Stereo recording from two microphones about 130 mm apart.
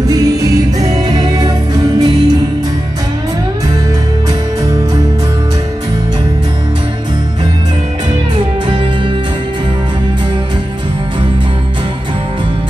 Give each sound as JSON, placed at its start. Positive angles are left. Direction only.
{"t": 0.1, "sound": "music", "side_deg": -25}
{"t": 8.6, "sound": "music", "side_deg": -40}